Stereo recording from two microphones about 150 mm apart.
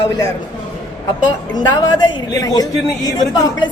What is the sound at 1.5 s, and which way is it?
A woman's voice, 30° left (ahead or behind).